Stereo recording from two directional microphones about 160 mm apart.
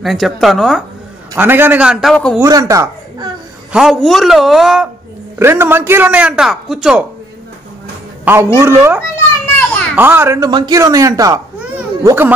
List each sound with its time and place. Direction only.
0.0 s a woman's voice: centre (ahead or behind)
1.3 s speech: 15° right (ahead or behind); by 2.3 s 5° left (ahead or behind)
2.3 s speech: 20° right (ahead or behind)
3.7 s a woman's voice: centre (ahead or behind)
5.4 s speech: 15° right (ahead or behind)
8.5 s a man's voice: 15° right (ahead or behind)
11.7 s a sound: 15° right (ahead or behind)